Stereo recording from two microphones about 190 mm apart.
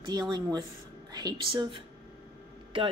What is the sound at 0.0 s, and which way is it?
Speech, 20° right (ahead or behind).